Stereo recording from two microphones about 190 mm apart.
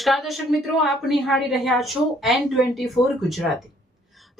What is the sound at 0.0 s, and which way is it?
A woman's voice, centre (ahead or behind).